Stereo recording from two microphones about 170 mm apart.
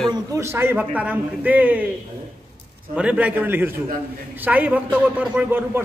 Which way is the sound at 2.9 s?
5° right (ahead or behind).